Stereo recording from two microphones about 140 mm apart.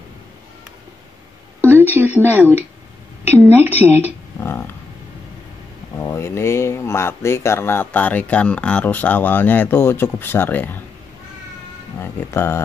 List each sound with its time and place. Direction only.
1.8 s speech: 15° right (ahead or behind)
3.4 s speech: 15° right (ahead or behind)
4.0 s a sound: 15° left (ahead or behind)
5.9 s speech: 20° left (ahead or behind)
12.0 s speech: 15° left (ahead or behind)